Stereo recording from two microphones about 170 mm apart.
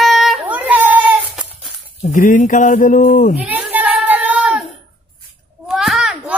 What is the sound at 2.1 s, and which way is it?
Speech, 50° left (ahead or behind).